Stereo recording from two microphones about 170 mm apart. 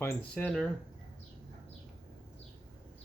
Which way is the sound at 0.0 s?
10° left (ahead or behind).